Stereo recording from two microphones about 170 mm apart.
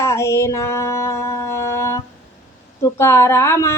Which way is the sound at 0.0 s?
15° left (ahead or behind).